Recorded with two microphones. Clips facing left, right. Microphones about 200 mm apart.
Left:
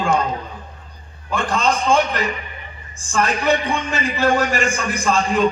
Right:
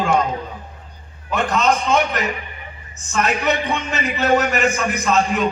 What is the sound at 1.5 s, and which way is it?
A man's voice, 30° left (ahead or behind).